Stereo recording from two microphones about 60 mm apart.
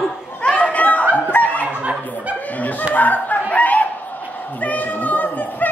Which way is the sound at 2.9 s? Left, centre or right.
Left.